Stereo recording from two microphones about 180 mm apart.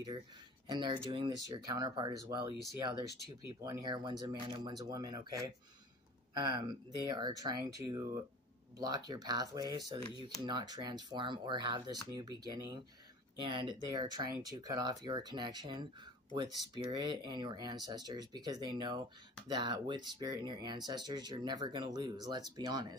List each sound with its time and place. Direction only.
0.7 s speech: 25° right (ahead or behind)
3.6 s speech: 20° right (ahead or behind)